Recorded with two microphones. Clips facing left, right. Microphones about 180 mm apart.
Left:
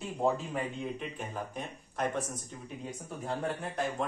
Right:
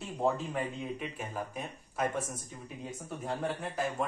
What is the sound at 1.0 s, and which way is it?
Speech, 5° right (ahead or behind).